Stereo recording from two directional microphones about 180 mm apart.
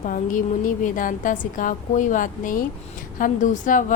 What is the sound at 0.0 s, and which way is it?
A woman's voice, 45° left (ahead or behind).